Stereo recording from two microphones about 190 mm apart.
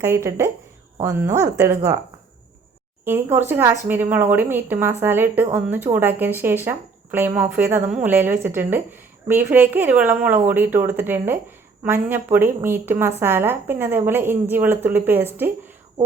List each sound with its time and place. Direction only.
0.0 s a woman's voice: 15° right (ahead or behind)
3.0 s a woman's voice: 10° right (ahead or behind)